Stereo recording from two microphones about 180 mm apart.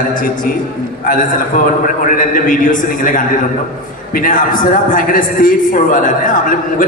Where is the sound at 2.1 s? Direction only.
50° left (ahead or behind).